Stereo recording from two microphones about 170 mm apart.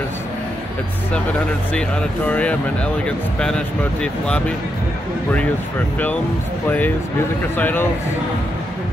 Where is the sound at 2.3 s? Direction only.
10° left (ahead or behind).